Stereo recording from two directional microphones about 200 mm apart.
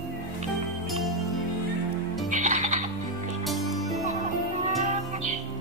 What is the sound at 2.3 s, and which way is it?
Music, 40° right (ahead or behind).